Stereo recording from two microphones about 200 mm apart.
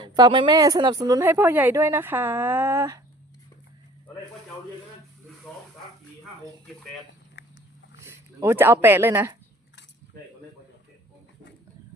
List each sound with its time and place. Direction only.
0.0 s speech: 20° right (ahead or behind)
7.4 s dog: 65° left (ahead or behind)
8.0 s speech: 15° right (ahead or behind)